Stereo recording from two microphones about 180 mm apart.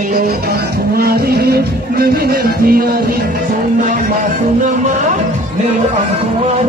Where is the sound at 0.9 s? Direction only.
55° right (ahead or behind).